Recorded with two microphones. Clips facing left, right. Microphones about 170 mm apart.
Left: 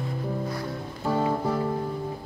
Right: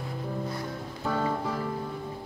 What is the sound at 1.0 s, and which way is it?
Music, 20° left (ahead or behind).